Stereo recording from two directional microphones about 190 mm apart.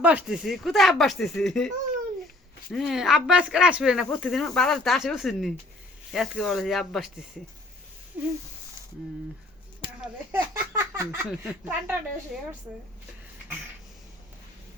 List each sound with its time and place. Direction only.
0.0 s speech: 5° right (ahead or behind)
2.7 s speech: centre (ahead or behind)
8.1 s speech: 10° right (ahead or behind)
10.3 s a sound: 15° right (ahead or behind)
11.3 s speech: 5° right (ahead or behind)